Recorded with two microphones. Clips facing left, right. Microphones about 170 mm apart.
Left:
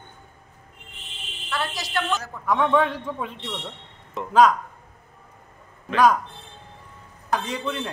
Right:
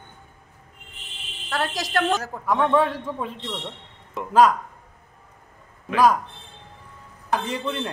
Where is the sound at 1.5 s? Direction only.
45° right (ahead or behind).